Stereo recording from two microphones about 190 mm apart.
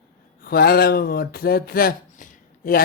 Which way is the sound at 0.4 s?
55° left (ahead or behind).